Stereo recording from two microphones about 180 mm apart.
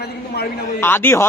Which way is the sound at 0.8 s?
10° left (ahead or behind).